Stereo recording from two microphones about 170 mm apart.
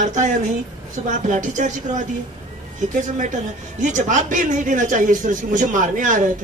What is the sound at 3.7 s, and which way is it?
Speech, 45° right (ahead or behind).